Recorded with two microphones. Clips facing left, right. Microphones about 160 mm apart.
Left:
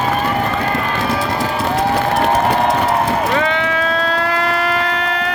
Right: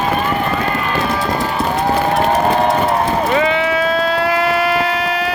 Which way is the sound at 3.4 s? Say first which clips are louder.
Right 2 dB; 5° right (ahead or behind).